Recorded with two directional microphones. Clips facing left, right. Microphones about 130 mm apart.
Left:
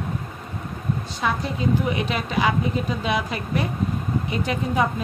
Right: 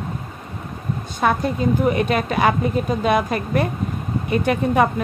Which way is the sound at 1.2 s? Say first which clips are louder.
Right 7 dB; 50° right (ahead or behind).